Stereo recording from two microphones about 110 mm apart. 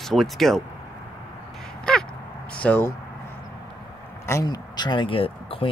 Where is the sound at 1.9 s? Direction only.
5° left (ahead or behind).